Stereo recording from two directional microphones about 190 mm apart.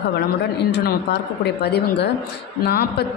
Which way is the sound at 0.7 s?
65° left (ahead or behind).